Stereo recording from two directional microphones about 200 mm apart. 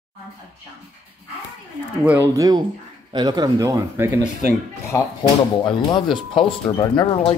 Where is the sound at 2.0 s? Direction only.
15° right (ahead or behind).